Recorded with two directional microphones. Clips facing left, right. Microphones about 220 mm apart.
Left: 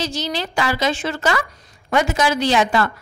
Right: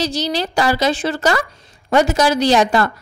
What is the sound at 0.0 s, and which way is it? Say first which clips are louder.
A woman's voice: right 4 dB; 35° right (ahead or behind).